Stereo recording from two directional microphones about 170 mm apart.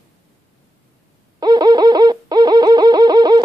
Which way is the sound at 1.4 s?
25° right (ahead or behind).